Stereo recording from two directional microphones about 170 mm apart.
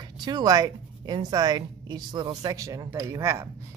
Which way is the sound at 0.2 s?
25° right (ahead or behind).